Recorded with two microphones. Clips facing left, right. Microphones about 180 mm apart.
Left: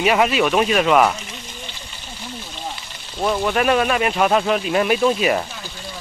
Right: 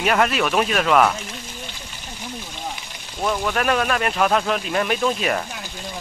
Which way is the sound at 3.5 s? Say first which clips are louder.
Left 4 dB; 5° left (ahead or behind).